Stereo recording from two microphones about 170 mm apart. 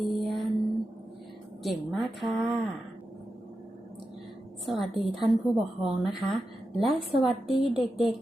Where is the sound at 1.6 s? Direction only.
Centre (ahead or behind).